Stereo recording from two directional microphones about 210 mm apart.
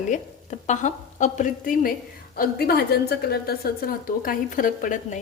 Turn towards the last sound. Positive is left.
turn(degrees=40)  # may be behind; listen again after turning